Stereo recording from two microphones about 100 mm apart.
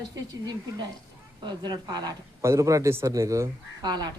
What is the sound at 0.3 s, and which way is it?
Speech, 45° right (ahead or behind).